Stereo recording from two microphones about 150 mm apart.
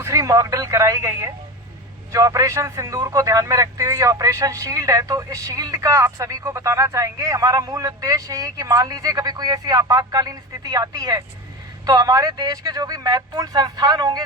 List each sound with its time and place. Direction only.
0.0 s speech: 20° right (ahead or behind)